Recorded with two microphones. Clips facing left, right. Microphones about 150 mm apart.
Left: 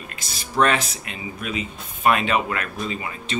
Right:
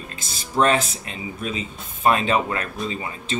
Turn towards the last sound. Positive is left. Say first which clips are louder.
# right 1 dB
turn(degrees=-30)  # may be behind; listen again after turning